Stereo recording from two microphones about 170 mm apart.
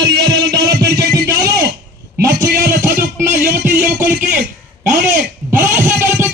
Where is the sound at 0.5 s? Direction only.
25° right (ahead or behind).